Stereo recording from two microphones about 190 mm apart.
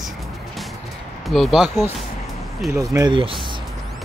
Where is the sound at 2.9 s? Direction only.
20° right (ahead or behind).